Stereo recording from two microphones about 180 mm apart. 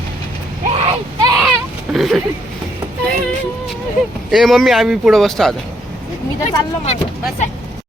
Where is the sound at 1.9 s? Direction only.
Centre (ahead or behind).